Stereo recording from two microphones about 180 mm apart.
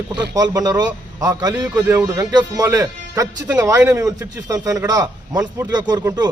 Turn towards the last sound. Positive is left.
turn(degrees=-20)  # may be behind; listen again after turning